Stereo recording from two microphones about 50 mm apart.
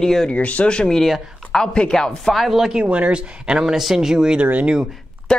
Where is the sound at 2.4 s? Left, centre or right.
Centre.